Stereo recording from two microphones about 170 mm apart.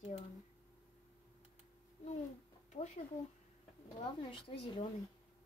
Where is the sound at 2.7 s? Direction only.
45° left (ahead or behind).